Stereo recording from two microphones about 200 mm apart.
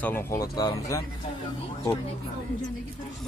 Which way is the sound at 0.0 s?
10° left (ahead or behind).